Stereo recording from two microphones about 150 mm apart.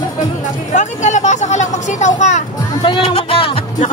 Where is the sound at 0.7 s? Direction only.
50° left (ahead or behind).